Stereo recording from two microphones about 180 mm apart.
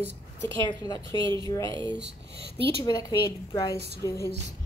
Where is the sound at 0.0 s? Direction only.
80° right.